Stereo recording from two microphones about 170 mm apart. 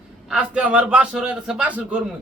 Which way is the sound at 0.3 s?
5° right (ahead or behind).